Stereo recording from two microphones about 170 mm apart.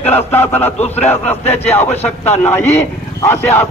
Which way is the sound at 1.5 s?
10° left (ahead or behind).